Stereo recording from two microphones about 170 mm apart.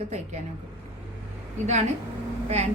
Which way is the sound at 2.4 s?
40° right (ahead or behind).